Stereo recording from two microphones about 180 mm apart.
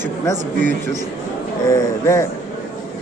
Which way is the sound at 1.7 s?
15° left (ahead or behind).